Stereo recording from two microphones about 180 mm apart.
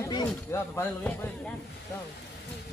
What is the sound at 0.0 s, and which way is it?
Speech, 20° left (ahead or behind).